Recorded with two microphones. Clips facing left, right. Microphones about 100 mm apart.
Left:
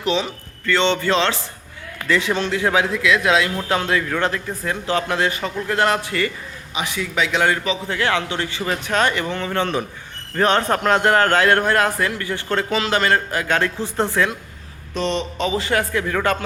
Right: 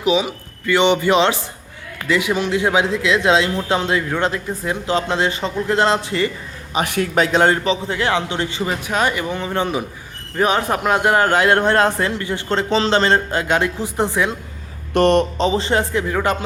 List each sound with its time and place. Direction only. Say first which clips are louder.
0.0 s a man's voice: right 4 dB; 10° right (ahead or behind)
6.7 s a man's voice: right 5 dB; 55° right (ahead or behind)
7.3 s a man's voice: right 2 dB; 35° right (ahead or behind)
7.9 s a man's voice: right 1 dB; 20° right (ahead or behind)
14.9 s a man's voice: right 9 dB; 55° right (ahead or behind)
15.4 s a man's voice: right 3 dB; 30° right (ahead or behind)